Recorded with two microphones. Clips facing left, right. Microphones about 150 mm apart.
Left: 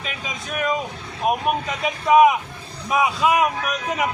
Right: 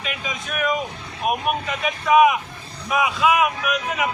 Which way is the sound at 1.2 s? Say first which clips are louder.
Left 1 dB; 30° left (ahead or behind).